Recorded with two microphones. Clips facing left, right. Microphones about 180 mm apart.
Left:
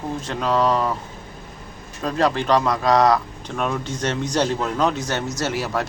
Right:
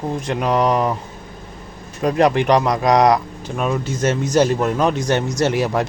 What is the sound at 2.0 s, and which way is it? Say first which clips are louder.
Speech: right 5 dB; 15° right (ahead or behind).